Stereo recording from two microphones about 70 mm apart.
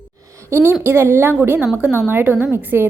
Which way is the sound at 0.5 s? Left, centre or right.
Right.